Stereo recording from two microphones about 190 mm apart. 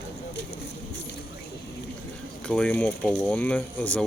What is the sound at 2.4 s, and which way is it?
Speech, 5° left (ahead or behind).